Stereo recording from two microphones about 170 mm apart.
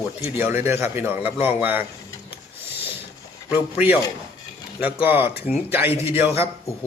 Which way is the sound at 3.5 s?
10° right (ahead or behind).